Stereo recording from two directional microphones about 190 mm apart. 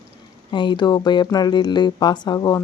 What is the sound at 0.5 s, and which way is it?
Speech, 25° left (ahead or behind).